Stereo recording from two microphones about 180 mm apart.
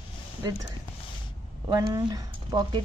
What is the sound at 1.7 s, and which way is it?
Speech, 20° right (ahead or behind).